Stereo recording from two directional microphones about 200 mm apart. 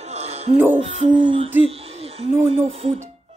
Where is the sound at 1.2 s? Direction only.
25° right (ahead or behind).